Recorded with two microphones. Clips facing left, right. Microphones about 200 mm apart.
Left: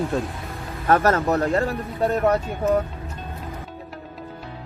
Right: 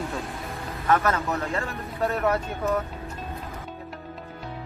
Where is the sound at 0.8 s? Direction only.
40° left (ahead or behind).